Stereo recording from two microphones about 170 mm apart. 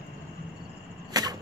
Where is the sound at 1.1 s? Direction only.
20° right (ahead or behind).